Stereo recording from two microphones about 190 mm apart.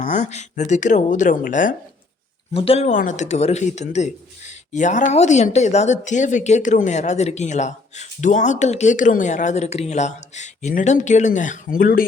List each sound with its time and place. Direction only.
0.0 s speech: 40° left (ahead or behind)
2.5 s speech: 30° left (ahead or behind); by 12.0 s 50° left (ahead or behind)